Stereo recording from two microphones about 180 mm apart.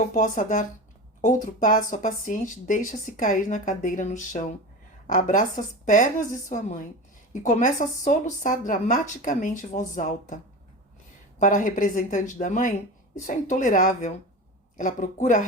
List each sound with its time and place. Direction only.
0.1 s speech: 45° left (ahead or behind)
11.3 s speech: 45° left (ahead or behind)